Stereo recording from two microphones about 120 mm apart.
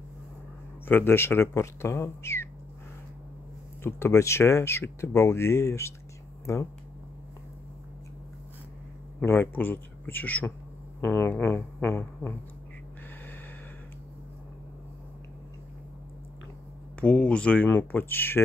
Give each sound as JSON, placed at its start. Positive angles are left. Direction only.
{"t": 0.8, "sound": "speech", "side_deg": 15}
{"t": 3.8, "sound": "speech", "side_deg": 20}
{"t": 9.2, "sound": "speech", "side_deg": 15}
{"t": 17.0, "sound": "speech", "side_deg": 10}